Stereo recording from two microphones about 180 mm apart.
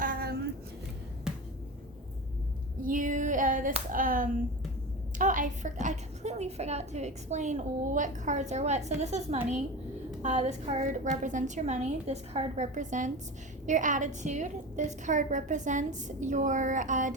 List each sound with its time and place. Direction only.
0.0 s a sound: 55° right (ahead or behind)
1.3 s music: 5° right (ahead or behind)
2.8 s clapping: 45° right (ahead or behind)
3.9 s a woman's voice: 50° right (ahead or behind)